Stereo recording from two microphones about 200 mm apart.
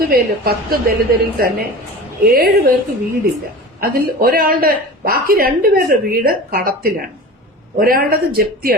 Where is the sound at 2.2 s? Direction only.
50° right (ahead or behind).